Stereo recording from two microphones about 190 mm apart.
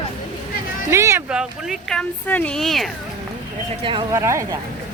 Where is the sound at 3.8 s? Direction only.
25° right (ahead or behind).